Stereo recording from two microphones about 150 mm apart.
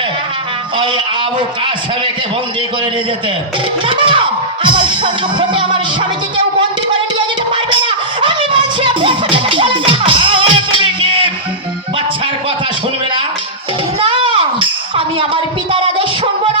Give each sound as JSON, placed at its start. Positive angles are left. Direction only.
{"t": 0.8, "sound": "music", "side_deg": -30}
{"t": 3.8, "sound": "music", "side_deg": -35}
{"t": 14.0, "sound": "a sound", "side_deg": -35}